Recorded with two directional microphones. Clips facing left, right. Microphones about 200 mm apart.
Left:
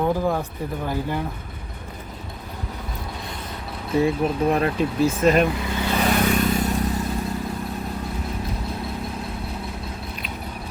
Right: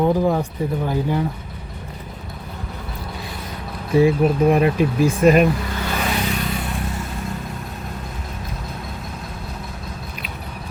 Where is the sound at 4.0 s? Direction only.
15° right (ahead or behind).